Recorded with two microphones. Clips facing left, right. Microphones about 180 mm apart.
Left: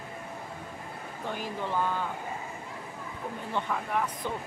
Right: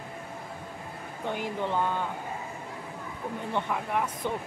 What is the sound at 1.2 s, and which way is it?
Speech, 20° right (ahead or behind).